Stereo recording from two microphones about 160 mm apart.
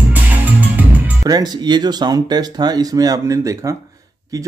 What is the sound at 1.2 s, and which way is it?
Speech, 25° right (ahead or behind).